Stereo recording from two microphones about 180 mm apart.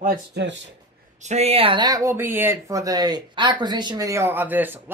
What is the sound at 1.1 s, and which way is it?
Speech, 40° right (ahead or behind).